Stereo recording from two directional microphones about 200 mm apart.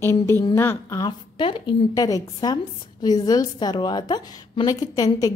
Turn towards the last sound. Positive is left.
turn(degrees=20)  # may be behind; listen again after turning